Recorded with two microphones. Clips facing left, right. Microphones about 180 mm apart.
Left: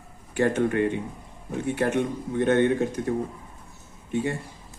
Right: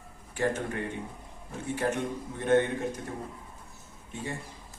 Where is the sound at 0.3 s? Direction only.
70° left (ahead or behind).